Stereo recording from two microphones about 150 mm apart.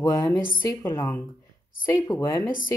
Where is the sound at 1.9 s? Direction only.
25° left (ahead or behind).